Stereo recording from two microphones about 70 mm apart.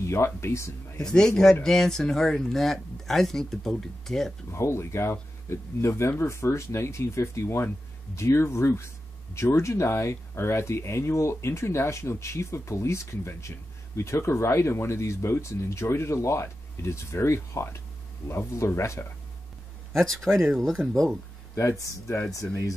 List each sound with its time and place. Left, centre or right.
0.0 s speech: left
0.9 s speech: centre
4.5 s speech: left
19.9 s speech: centre
21.5 s speech: left